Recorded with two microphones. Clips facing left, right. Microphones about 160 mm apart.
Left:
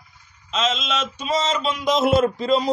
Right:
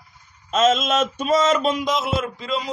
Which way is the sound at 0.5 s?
50° right (ahead or behind).